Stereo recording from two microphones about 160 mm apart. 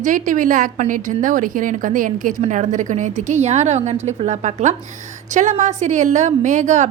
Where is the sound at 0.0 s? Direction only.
55° right (ahead or behind).